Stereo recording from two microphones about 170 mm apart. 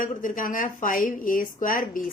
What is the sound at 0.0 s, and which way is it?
A woman's voice, 50° left (ahead or behind).